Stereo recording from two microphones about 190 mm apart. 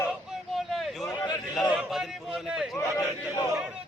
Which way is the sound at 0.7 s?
Centre (ahead or behind).